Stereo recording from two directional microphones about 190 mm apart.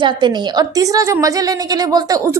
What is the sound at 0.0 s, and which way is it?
A woman's voice, 25° right (ahead or behind).